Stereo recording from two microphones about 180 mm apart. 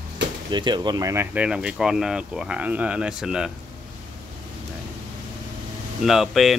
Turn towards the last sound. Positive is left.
turn(degrees=0)  # may be behind; listen again after turning